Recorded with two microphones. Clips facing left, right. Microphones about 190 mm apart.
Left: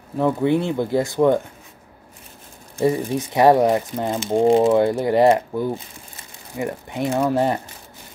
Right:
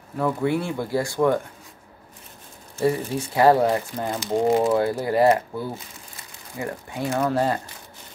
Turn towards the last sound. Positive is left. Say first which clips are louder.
# left 3 dB
turn(degrees=20)  # may be behind; listen again after turning